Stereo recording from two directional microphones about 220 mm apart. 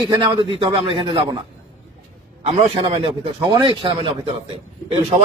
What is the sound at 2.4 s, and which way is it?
Speech, 25° right (ahead or behind).